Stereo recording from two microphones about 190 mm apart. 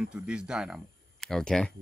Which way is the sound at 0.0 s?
5° right (ahead or behind).